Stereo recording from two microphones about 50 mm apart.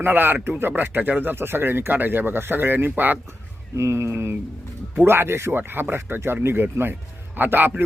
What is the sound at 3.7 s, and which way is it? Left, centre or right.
A man's voice, right.